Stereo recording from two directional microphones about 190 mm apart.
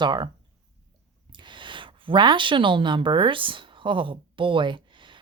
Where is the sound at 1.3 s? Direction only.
25° right (ahead or behind).